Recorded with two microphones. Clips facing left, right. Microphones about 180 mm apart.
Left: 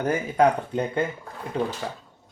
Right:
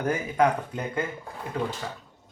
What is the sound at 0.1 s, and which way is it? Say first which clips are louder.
Speech: left 3 dB; 30° left (ahead or behind).